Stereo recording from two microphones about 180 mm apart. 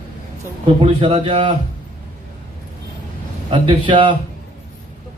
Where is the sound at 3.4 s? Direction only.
30° right (ahead or behind).